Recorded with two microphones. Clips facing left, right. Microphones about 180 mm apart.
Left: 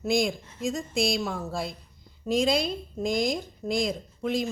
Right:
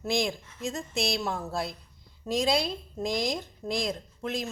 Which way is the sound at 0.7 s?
Centre (ahead or behind).